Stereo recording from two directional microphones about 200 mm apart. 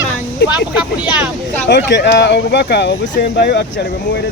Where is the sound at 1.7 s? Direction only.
60° left (ahead or behind).